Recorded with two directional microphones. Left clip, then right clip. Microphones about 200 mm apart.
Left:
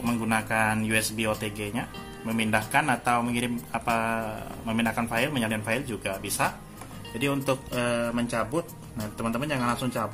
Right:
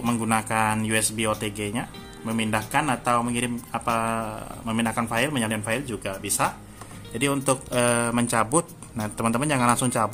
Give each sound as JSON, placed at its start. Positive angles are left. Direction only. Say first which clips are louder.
{"t": 0.0, "sound": "speech", "louder": "right 3 dB", "side_deg": -25}
{"t": 7.2, "sound": "speech", "louder": "right 3 dB", "side_deg": -30}